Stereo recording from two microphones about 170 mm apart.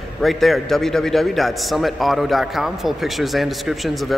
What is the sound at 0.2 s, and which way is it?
A man's voice, centre (ahead or behind).